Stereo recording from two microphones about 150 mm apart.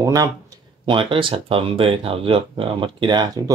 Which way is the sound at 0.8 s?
35° right (ahead or behind).